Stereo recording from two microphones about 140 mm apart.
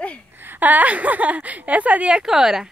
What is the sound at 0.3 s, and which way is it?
A woman's voice, 15° right (ahead or behind).